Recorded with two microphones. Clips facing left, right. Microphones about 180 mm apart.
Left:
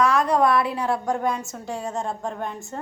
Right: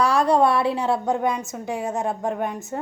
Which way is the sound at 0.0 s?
30° right (ahead or behind).